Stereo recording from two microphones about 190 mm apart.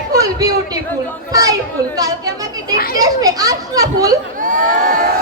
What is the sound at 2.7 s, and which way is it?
Speech, 50° left (ahead or behind).